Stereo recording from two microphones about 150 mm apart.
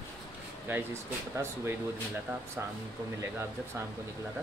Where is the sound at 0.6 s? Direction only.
15° right (ahead or behind).